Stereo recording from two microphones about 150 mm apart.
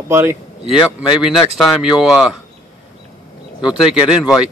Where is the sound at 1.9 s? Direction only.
5° right (ahead or behind).